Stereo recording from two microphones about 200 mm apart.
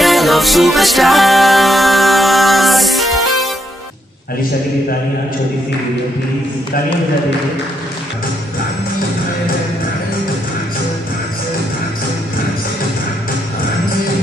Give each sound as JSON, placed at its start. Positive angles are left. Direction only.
{"t": 0.0, "sound": "music", "side_deg": 0}